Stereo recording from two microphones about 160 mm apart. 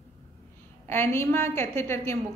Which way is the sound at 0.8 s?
15° left (ahead or behind).